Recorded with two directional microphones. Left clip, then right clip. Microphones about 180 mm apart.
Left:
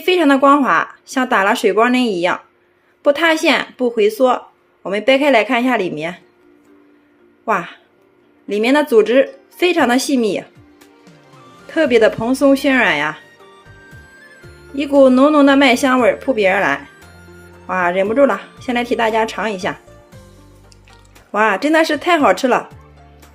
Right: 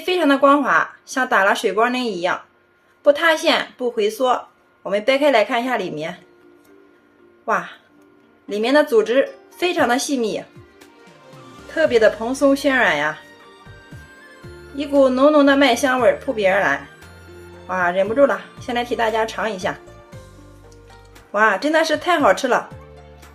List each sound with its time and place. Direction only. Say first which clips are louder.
0.0 s speech: left 3 dB; 30° left (ahead or behind)
7.4 s speech: left 3 dB; 30° left (ahead or behind)
11.7 s speech: left 2 dB; 30° left (ahead or behind)
15.0 s speech: left 3 dB; 30° left (ahead or behind)
21.3 s speech: left 2 dB; 30° left (ahead or behind)